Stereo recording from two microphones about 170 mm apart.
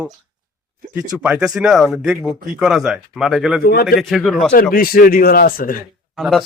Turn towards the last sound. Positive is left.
turn(degrees=0)  # may be behind; listen again after turning